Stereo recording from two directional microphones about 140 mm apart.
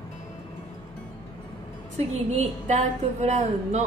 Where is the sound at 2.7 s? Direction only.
60° right (ahead or behind).